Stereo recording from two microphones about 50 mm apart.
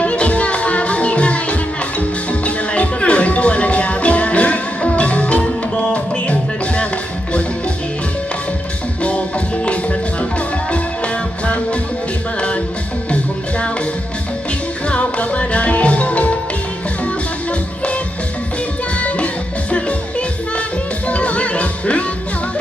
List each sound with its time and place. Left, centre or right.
0.0 s music: left
9.6 s music: left
14.8 s music: left
18.9 s music: left
21.1 s music: left